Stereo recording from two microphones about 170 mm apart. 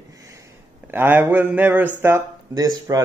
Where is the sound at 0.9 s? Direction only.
10° right (ahead or behind).